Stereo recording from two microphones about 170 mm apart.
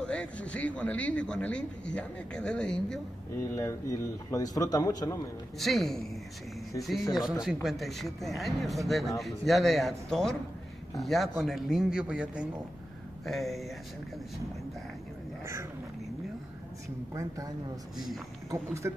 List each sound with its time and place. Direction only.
0.0 s speech: 5° left (ahead or behind)
3.3 s speech: 15° left (ahead or behind)
5.6 s speech: centre (ahead or behind)
17.1 s speech: 20° right (ahead or behind)
17.9 s speech: centre (ahead or behind)
18.5 s speech: 15° right (ahead or behind)